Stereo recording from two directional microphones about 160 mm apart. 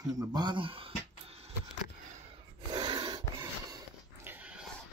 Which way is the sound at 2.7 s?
25° right (ahead or behind).